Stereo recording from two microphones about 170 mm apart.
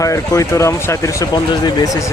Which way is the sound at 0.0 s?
20° left (ahead or behind).